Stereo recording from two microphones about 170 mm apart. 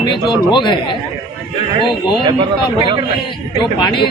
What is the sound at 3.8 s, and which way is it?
Speech, 30° left (ahead or behind).